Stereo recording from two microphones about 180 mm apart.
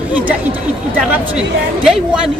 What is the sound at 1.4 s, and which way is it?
Speech, 5° right (ahead or behind).